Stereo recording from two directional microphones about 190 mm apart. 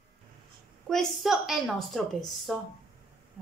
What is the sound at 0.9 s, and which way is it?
A woman's voice, centre (ahead or behind).